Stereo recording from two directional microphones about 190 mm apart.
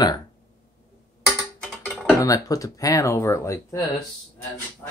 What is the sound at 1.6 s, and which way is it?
Typing, centre (ahead or behind).